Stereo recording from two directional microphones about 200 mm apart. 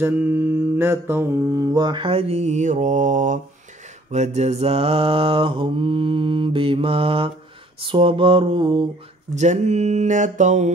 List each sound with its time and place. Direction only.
0.0 s mantra: 10° right (ahead or behind)
9.3 s speech: 35° right (ahead or behind)